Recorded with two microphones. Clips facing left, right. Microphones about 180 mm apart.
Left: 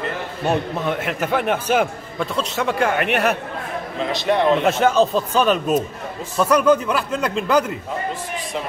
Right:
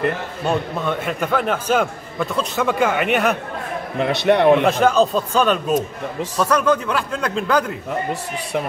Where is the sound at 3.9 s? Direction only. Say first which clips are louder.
Right 4 dB; 65° right (ahead or behind).